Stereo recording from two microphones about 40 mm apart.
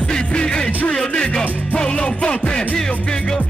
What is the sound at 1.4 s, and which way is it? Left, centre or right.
Music, right.